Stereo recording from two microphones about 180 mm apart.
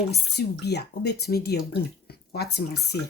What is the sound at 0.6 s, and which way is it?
Speech, 65° left (ahead or behind).